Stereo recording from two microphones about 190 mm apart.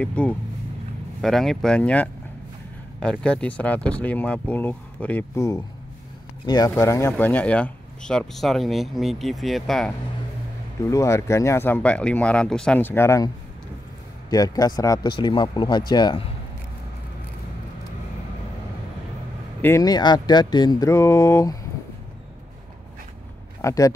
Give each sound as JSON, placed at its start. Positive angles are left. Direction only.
{"t": 0.0, "sound": "speech", "side_deg": 5}
{"t": 10.9, "sound": "speech", "side_deg": 15}
{"t": 14.3, "sound": "speech", "side_deg": 20}
{"t": 19.6, "sound": "speech", "side_deg": 15}
{"t": 23.6, "sound": "speech", "side_deg": 15}